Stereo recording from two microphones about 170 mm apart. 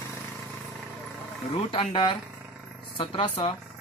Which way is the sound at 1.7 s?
30° left (ahead or behind).